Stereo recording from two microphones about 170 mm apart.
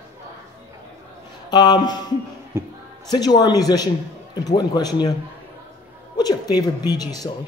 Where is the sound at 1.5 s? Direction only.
25° left (ahead or behind).